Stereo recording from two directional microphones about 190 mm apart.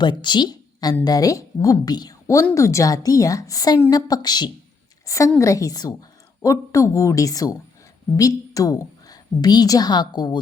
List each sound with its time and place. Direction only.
0.0 s a woman's voice: 25° left (ahead or behind)